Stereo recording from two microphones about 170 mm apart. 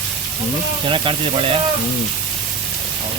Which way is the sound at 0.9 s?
30° right (ahead or behind).